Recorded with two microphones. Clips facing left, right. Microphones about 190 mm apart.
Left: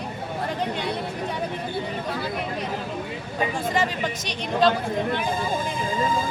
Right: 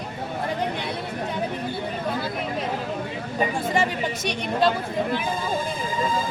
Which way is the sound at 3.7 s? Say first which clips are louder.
Right 1 dB; 10° right (ahead or behind).